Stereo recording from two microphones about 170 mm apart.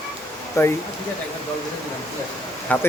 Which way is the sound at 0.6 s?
15° left (ahead or behind).